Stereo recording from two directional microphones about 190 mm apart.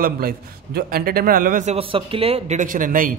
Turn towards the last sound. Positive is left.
turn(degrees=-45)  # may be behind; listen again after turning